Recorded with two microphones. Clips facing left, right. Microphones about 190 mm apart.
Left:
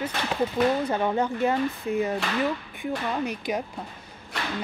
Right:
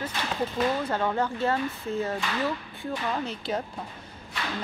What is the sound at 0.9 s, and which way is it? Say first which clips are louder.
Speech: left 2 dB; 15° left (ahead or behind).